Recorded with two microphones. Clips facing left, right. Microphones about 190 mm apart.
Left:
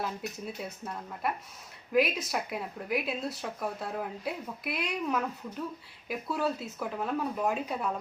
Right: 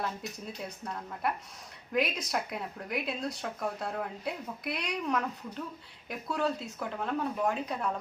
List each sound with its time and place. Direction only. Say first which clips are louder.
1.2 s speech: even; centre (ahead or behind)